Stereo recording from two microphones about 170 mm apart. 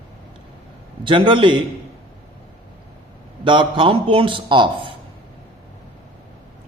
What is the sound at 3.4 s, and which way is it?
A man's voice, 30° right (ahead or behind).